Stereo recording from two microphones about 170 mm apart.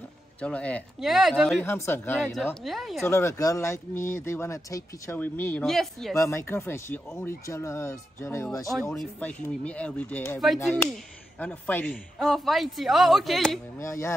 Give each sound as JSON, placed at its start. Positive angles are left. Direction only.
{"t": 0.4, "sound": "a man's voice", "side_deg": 5}
{"t": 1.6, "sound": "speech", "side_deg": 15}
{"t": 2.3, "sound": "a man's voice", "side_deg": 0}
{"t": 3.1, "sound": "speech", "side_deg": 15}
{"t": 5.7, "sound": "a man's voice", "side_deg": 0}
{"t": 6.1, "sound": "a man's voice", "side_deg": 15}
{"t": 13.7, "sound": "speech", "side_deg": 15}